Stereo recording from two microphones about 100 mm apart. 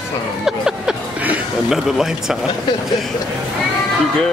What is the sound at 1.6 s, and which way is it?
Speech, 5° right (ahead or behind).